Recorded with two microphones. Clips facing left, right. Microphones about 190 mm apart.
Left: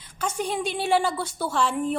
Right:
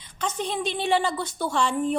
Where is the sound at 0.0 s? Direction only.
10° left (ahead or behind).